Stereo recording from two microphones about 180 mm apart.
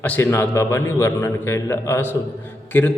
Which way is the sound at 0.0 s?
10° left (ahead or behind).